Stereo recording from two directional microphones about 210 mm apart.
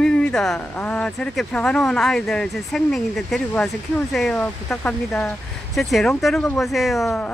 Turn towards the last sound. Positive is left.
turn(degrees=0)  # may be behind; listen again after turning